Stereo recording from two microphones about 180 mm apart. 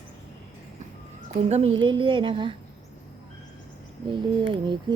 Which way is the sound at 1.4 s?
40° right (ahead or behind).